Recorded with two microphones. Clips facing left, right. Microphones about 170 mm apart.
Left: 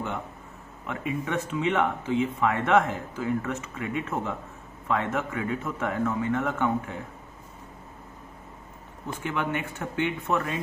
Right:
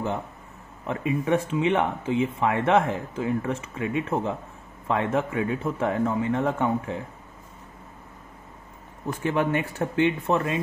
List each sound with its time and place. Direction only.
0.8 s speech: 30° right (ahead or behind)
9.2 s speech: 35° right (ahead or behind)